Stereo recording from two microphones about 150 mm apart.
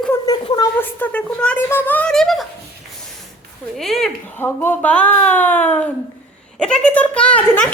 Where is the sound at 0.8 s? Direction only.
10° left (ahead or behind).